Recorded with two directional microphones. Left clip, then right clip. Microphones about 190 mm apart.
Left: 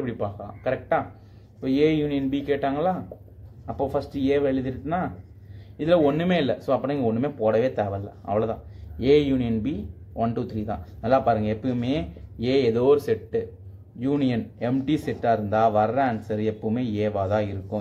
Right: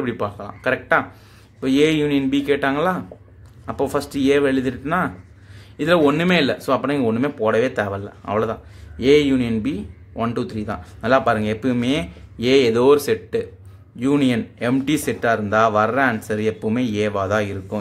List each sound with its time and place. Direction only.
0.0 s speech: 30° right (ahead or behind)